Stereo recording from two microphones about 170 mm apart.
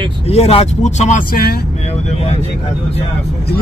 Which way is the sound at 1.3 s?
65° left (ahead or behind).